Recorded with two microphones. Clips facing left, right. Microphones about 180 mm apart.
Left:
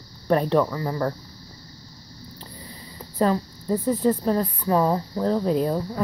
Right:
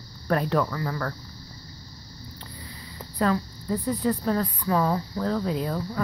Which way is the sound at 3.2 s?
30° left (ahead or behind).